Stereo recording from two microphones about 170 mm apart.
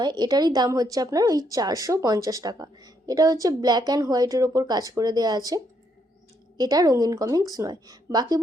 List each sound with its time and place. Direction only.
0.0 s a woman's voice: 25° right (ahead or behind)